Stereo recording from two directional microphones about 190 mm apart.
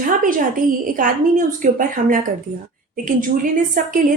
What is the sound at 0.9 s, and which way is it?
A woman's voice, 45° right (ahead or behind).